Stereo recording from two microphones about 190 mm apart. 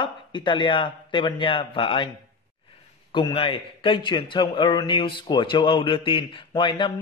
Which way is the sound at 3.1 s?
25° left (ahead or behind).